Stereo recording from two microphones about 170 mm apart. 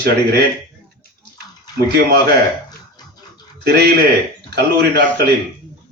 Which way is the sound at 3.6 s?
75° right (ahead or behind).